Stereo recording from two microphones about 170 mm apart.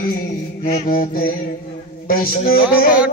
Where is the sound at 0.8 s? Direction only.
60° left (ahead or behind).